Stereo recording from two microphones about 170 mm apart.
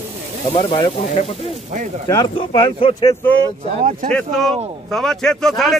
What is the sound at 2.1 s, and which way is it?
Speech, 25° left (ahead or behind).